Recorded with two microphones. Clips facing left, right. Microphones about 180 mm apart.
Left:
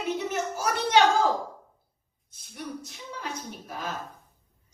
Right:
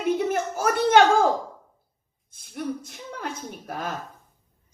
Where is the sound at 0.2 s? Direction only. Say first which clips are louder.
Right 5 dB; 50° right (ahead or behind).